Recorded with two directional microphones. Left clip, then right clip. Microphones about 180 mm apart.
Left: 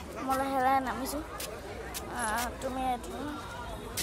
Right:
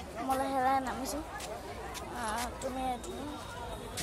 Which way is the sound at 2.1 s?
10° left (ahead or behind).